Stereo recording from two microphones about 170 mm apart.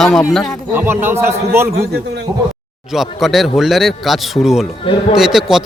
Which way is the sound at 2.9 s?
Centre (ahead or behind).